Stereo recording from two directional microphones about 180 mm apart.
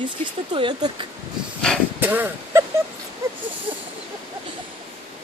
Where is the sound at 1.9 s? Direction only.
10° right (ahead or behind).